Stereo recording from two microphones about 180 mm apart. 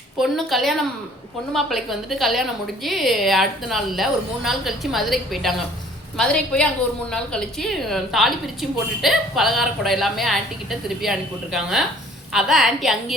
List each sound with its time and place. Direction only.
0.2 s a woman's voice: centre (ahead or behind)